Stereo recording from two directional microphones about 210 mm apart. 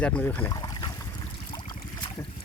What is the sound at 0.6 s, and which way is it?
Trickle, 20° left (ahead or behind).